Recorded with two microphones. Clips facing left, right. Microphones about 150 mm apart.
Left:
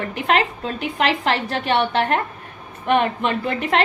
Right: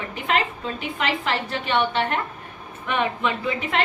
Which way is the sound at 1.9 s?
60° left (ahead or behind).